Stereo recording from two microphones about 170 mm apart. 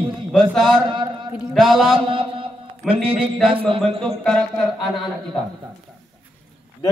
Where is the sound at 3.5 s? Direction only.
30° right (ahead or behind).